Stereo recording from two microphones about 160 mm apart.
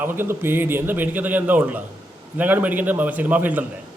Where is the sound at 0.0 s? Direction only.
15° right (ahead or behind).